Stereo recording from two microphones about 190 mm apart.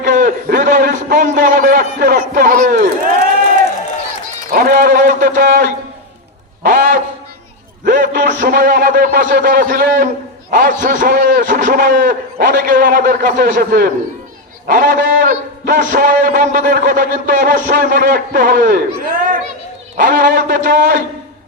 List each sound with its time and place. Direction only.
0.0 s a man's voice: 40° right (ahead or behind)
4.5 s a man's voice: 45° right (ahead or behind)
6.6 s a sound: 50° right (ahead or behind)
7.9 s music: 45° right (ahead or behind)
8.4 s a man's voice: 45° right (ahead or behind)